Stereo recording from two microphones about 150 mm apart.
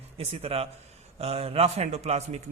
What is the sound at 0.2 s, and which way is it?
Speech, 40° right (ahead or behind).